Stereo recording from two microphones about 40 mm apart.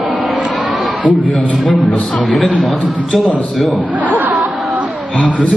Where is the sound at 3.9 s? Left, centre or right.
Right.